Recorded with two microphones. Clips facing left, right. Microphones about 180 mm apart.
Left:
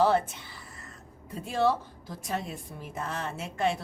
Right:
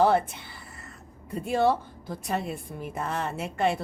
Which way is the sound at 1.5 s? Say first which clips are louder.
Right 3 dB; 55° right (ahead or behind).